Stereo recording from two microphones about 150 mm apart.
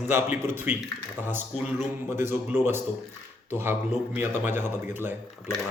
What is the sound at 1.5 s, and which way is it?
Speech, centre (ahead or behind).